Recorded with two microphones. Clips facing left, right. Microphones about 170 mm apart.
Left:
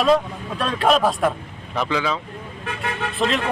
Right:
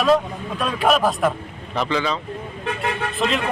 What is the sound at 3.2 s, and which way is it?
Speech, centre (ahead or behind).